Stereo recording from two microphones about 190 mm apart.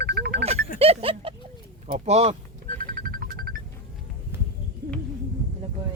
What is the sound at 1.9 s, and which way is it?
Music, 35° right (ahead or behind).